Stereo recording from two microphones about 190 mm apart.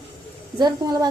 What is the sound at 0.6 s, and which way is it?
Speech, 20° right (ahead or behind).